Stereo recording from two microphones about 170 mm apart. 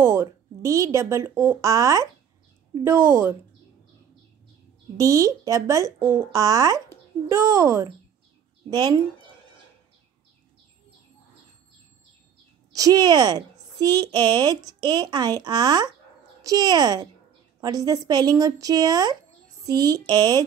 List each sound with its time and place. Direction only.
0.0 s speech: 15° right (ahead or behind)
4.9 s a woman's voice: 20° right (ahead or behind)
12.7 s a woman's voice: 20° right (ahead or behind)